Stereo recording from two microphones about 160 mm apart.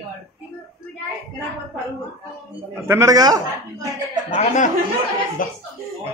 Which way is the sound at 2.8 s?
20° right (ahead or behind).